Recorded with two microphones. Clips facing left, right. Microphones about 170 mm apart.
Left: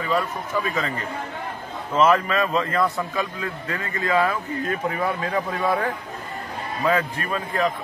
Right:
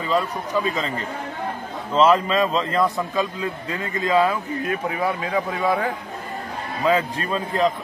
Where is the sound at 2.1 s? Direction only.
20° right (ahead or behind).